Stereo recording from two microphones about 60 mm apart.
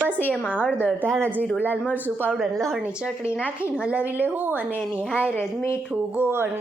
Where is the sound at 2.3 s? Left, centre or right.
Centre.